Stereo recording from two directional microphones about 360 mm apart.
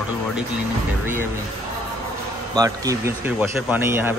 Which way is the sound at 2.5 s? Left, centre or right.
Centre.